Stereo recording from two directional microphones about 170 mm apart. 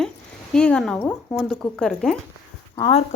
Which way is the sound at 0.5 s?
5° left (ahead or behind).